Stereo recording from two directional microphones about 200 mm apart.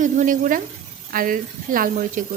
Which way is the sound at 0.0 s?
40° right (ahead or behind).